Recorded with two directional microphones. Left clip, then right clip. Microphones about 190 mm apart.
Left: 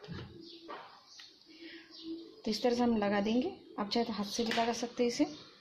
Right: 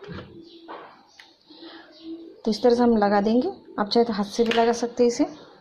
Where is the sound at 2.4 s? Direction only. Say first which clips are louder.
Right 12 dB; 20° right (ahead or behind).